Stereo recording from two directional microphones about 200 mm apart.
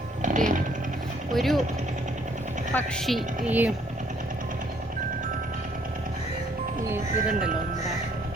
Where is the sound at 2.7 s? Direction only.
5° left (ahead or behind).